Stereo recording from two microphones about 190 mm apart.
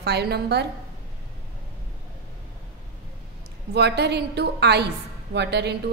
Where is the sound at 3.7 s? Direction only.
60° right (ahead or behind).